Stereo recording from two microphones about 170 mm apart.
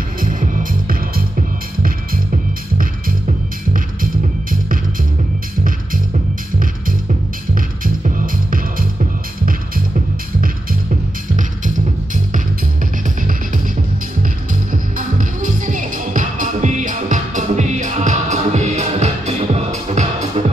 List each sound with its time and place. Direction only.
0.2 s music: 50° right (ahead or behind)
3.7 s music: 55° right (ahead or behind)
7.5 s music: 55° right (ahead or behind)
11.3 s music: 50° right (ahead or behind)
14.5 s music: 50° right (ahead or behind)